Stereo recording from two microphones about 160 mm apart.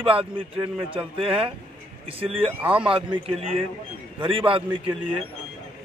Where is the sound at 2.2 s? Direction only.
35° right (ahead or behind).